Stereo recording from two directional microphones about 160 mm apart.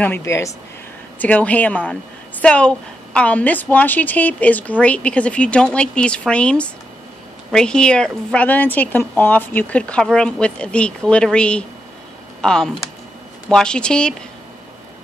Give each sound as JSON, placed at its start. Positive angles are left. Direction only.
{"t": 0.0, "sound": "a woman's voice", "side_deg": 15}